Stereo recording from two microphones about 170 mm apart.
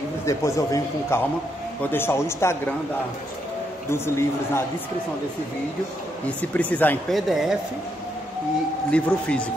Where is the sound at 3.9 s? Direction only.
15° left (ahead or behind).